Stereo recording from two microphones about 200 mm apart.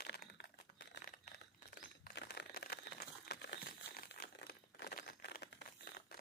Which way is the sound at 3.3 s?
55° left (ahead or behind).